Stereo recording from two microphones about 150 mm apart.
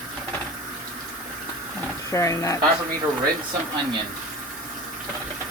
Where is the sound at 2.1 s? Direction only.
20° left (ahead or behind).